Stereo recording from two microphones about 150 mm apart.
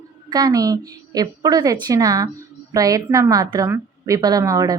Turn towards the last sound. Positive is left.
turn(degrees=-20)  # may be behind; listen again after turning